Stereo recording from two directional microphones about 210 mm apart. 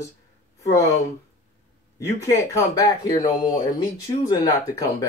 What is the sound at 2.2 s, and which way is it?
Speech, 15° left (ahead or behind).